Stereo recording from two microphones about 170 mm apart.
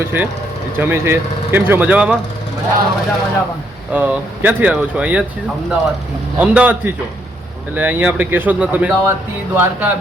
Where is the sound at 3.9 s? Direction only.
10° right (ahead or behind).